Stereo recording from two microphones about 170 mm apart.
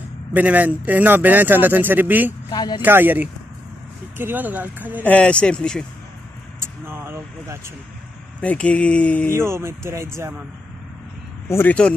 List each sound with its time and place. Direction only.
0.3 s speech: 10° right (ahead or behind)
2.5 s speech: 25° left (ahead or behind)
2.8 s speech: 10° right (ahead or behind)
5.0 s speech: 5° left (ahead or behind)
6.6 s speech: 15° right (ahead or behind)
8.4 s speech: 10° left (ahead or behind)
9.3 s speech: 15° right (ahead or behind)
11.4 s speech: 10° left (ahead or behind)